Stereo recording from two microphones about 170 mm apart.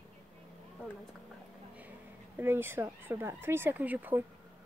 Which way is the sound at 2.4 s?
15° right (ahead or behind).